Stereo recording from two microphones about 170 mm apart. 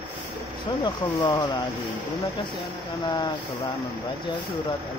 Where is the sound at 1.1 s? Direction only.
20° left (ahead or behind).